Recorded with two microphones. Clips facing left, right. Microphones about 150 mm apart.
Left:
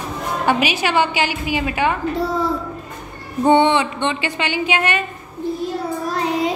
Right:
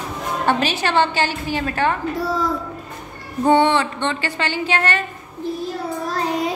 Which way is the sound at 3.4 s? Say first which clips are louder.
Left 1 dB; 20° left (ahead or behind).